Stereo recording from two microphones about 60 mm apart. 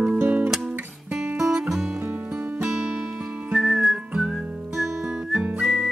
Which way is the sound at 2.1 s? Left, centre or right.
Right.